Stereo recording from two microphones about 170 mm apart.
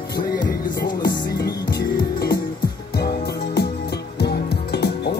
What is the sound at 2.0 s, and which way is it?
Music, 60° left (ahead or behind).